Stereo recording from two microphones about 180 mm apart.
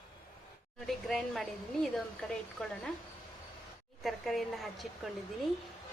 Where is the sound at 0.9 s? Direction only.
Centre (ahead or behind).